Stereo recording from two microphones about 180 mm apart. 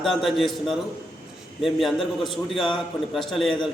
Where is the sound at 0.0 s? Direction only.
Centre (ahead or behind).